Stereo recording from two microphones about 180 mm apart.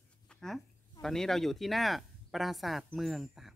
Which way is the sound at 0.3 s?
5° left (ahead or behind).